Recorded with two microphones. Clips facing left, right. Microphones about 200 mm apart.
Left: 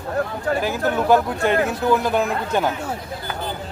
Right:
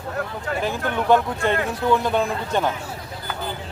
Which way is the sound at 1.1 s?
5° left (ahead or behind).